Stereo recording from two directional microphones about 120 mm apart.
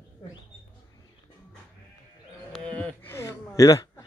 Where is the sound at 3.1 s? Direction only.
25° left (ahead or behind).